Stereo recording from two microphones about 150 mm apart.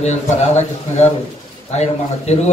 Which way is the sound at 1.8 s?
50° left (ahead or behind).